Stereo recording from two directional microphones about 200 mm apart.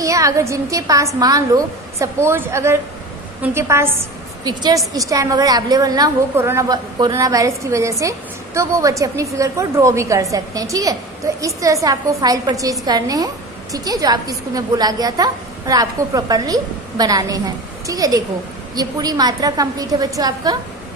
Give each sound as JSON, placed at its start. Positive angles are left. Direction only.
{"t": 0.0, "sound": "a woman's voice", "side_deg": -15}